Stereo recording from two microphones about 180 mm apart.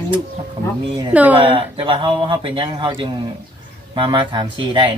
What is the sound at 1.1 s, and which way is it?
Speech, 10° right (ahead or behind).